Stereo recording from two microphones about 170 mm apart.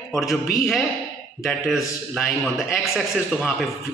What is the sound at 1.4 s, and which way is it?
A man's voice, centre (ahead or behind).